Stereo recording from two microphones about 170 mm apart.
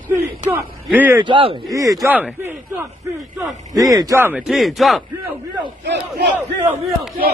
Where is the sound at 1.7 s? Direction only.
20° right (ahead or behind).